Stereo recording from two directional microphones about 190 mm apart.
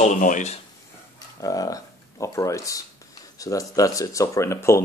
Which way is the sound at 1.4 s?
20° left (ahead or behind).